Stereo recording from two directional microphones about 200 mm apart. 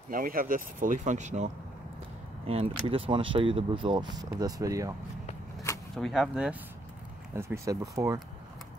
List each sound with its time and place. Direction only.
0.1 s speech: 45° right (ahead or behind); by 4.9 s 15° right (ahead or behind)
5.9 s speech: centre (ahead or behind)
7.3 s speech: 15° right (ahead or behind)